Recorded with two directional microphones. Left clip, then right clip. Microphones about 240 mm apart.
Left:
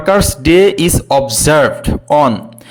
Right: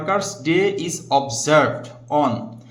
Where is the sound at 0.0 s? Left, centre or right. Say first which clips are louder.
Left 10 dB; left.